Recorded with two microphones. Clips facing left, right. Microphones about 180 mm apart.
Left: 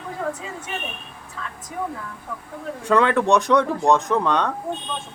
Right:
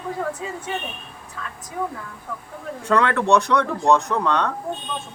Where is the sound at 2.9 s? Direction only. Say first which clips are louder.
Left 1 dB; 15° left (ahead or behind).